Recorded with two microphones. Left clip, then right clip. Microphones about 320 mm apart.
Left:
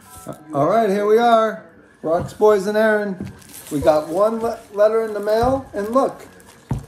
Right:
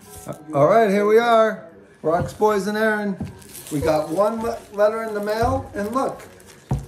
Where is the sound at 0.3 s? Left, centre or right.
Centre.